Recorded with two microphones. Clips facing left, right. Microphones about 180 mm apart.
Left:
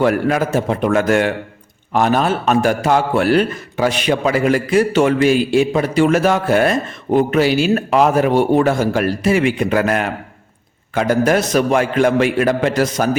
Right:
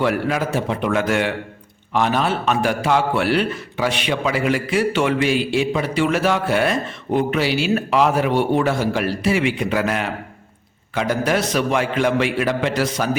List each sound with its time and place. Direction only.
0.0 s a man's voice: 45° left (ahead or behind)